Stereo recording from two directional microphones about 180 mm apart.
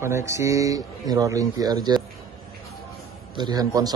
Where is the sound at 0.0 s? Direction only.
15° right (ahead or behind).